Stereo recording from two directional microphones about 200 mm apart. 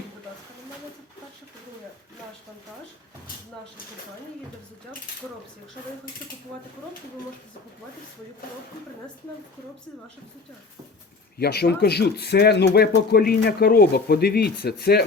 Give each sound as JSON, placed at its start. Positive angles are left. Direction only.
{"t": 11.3, "sound": "speech", "side_deg": 55}